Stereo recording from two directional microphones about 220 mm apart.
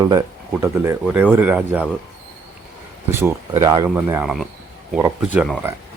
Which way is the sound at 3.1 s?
10° right (ahead or behind).